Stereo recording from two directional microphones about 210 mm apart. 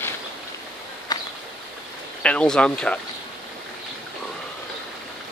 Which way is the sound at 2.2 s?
5° left (ahead or behind).